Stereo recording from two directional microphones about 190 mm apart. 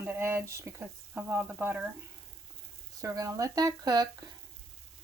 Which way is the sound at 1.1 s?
10° right (ahead or behind).